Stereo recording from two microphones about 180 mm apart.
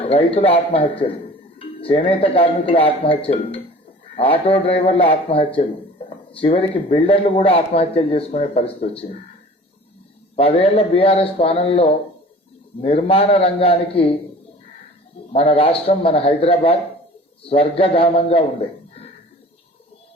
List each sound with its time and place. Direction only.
0.0 s a man's voice: 30° left (ahead or behind)
10.3 s a man's voice: 35° left (ahead or behind)
15.3 s a man's voice: 35° left (ahead or behind)